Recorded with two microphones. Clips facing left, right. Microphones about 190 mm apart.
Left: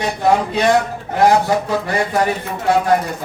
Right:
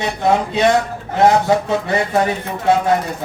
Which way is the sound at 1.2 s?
25° right (ahead or behind).